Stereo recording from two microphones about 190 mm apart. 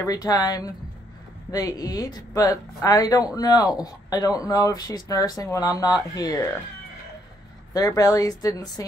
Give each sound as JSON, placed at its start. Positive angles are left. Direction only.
{"t": 0.0, "sound": "speech", "side_deg": 20}
{"t": 7.7, "sound": "speech", "side_deg": 20}